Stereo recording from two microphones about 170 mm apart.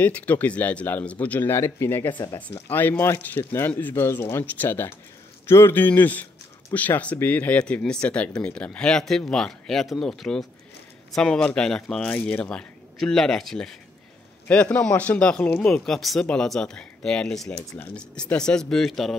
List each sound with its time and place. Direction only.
0.0 s speech: 10° left (ahead or behind)